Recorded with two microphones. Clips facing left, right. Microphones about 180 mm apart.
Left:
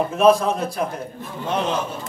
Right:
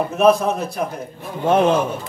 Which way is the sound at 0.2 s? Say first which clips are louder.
Right 1 dB; 15° right (ahead or behind).